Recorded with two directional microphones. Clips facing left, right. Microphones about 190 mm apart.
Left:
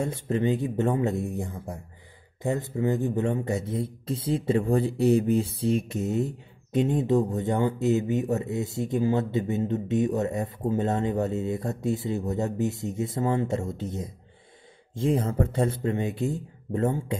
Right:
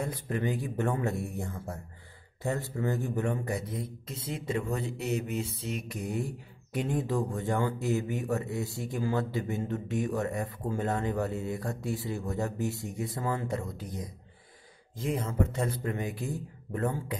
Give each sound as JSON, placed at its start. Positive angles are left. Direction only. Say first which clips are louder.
{"t": 0.0, "sound": "a man's voice", "louder": "left 6 dB", "side_deg": 25}